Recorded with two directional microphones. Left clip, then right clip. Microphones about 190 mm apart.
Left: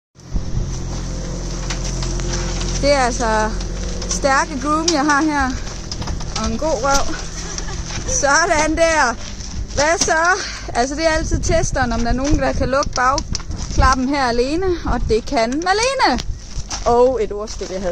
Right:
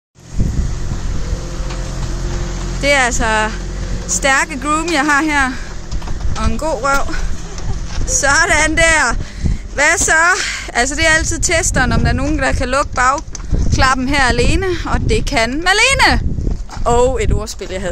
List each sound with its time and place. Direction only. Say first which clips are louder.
2.8 s speech: right 3 dB; centre (ahead or behind)
8.2 s speech: right 3 dB; centre (ahead or behind)
11.2 s a woman's voice: right 3 dB; 20° right (ahead or behind)
11.6 s speech: right 4 dB; centre (ahead or behind)
16.8 s a woman's voice: even; 20° right (ahead or behind)